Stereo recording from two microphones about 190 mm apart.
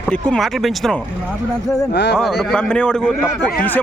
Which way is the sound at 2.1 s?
Centre (ahead or behind).